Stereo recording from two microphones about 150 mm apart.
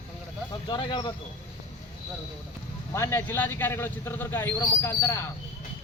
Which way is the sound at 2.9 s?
15° left (ahead or behind).